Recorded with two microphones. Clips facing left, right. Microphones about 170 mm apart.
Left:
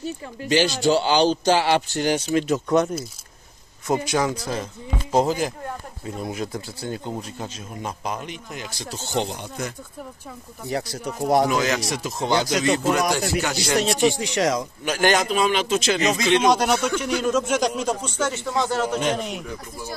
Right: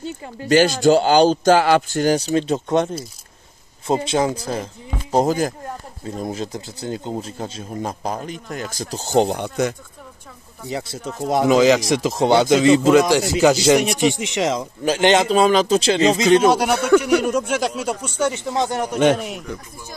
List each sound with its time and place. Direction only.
0.5 s a man's voice: 50° right (ahead or behind); by 4.6 s 30° right (ahead or behind)
5.1 s a man's voice: 45° right (ahead or behind)
6.4 s a man's voice: 25° right (ahead or behind); by 9.3 s 40° right (ahead or behind)
9.3 s speech: 75° right (ahead or behind)
10.7 s speech: 25° right (ahead or behind)
11.1 s speech: 20° left (ahead or behind)
11.4 s speech: 90° right
14.0 s a man's voice: 20° right (ahead or behind)
16.4 s speech: 10° right (ahead or behind)
18.2 s speech: 20° right (ahead or behind)